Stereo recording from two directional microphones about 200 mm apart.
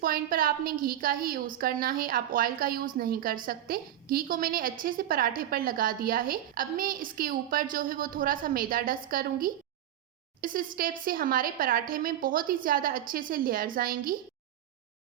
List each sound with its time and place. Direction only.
0.0 s a woman's voice: 45° right (ahead or behind)